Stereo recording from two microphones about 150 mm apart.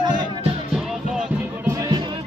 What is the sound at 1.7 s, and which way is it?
Music, 20° right (ahead or behind).